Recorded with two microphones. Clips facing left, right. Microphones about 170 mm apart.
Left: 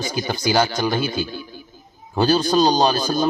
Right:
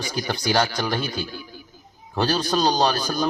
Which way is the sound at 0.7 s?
25° left (ahead or behind).